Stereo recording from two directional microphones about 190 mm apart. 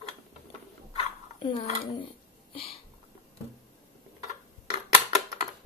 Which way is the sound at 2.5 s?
30° left (ahead or behind).